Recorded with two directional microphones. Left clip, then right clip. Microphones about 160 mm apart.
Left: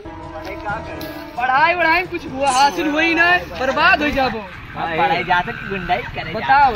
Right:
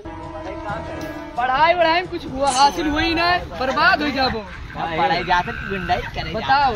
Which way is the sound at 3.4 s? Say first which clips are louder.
Left 2 dB; centre (ahead or behind).